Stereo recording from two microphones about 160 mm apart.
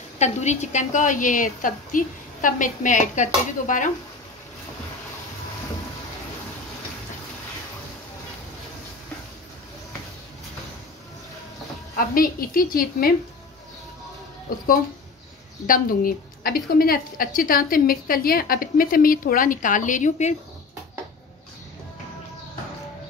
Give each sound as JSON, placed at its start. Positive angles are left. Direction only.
{"t": 0.2, "sound": "a woman's voice", "side_deg": 45}
{"t": 12.1, "sound": "a woman's voice", "side_deg": 65}
{"t": 14.5, "sound": "a woman's voice", "side_deg": 65}